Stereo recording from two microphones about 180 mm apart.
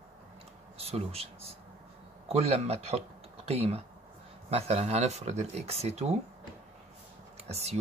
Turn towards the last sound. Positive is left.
turn(degrees=-35)  # may be behind; listen again after turning